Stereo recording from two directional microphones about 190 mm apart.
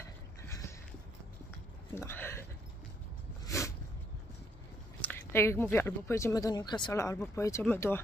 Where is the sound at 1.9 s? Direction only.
10° left (ahead or behind).